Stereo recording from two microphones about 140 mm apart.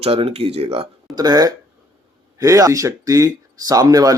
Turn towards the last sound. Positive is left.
turn(degrees=-25)  # may be behind; listen again after turning